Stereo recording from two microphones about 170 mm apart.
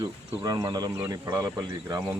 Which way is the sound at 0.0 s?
20° right (ahead or behind).